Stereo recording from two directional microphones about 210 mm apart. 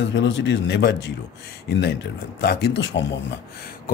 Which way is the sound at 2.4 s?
50° left (ahead or behind).